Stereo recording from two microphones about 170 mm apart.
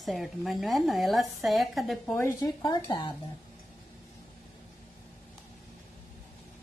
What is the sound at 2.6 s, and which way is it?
Speech, 25° left (ahead or behind).